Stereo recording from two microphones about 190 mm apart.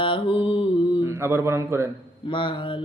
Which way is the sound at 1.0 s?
15° right (ahead or behind).